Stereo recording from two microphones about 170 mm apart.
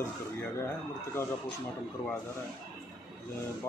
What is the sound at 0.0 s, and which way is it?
Speech, 15° left (ahead or behind).